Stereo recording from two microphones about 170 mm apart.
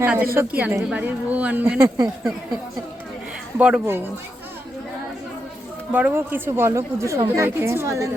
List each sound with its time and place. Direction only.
0.0 s speech: 10° right (ahead or behind)
3.6 s speech: 10° right (ahead or behind)
5.9 s speech: 10° right (ahead or behind)